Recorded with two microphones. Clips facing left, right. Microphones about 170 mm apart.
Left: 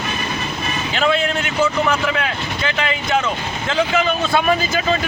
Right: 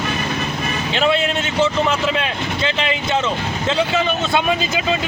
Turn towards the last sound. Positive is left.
turn(degrees=-20)  # may be behind; listen again after turning